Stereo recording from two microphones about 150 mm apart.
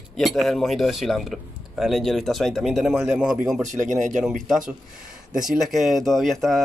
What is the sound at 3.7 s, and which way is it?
Speech, 55° right (ahead or behind).